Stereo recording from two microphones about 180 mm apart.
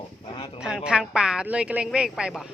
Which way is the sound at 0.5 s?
5° right (ahead or behind).